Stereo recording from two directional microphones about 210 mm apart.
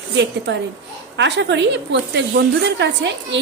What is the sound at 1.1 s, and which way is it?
Speech, 55° right (ahead or behind).